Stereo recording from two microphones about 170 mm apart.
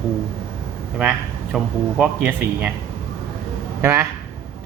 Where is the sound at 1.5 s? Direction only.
10° right (ahead or behind).